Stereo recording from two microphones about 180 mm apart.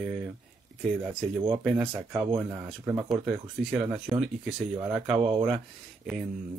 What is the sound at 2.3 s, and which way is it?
Speech, 25° right (ahead or behind).